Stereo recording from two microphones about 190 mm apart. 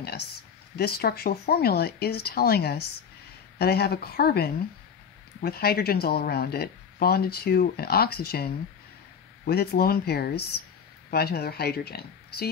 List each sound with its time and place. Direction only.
0.0 s speech: 55° left (ahead or behind)
9.5 s speech: 55° left (ahead or behind)